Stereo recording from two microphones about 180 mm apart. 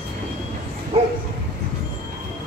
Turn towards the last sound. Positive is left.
turn(degrees=-30)  # may be behind; listen again after turning